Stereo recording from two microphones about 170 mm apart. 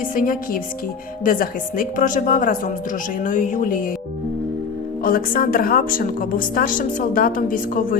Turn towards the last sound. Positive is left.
turn(degrees=55)  # may be behind; listen again after turning